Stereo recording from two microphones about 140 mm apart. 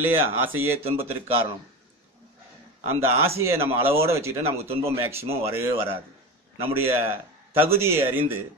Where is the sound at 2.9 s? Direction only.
20° right (ahead or behind).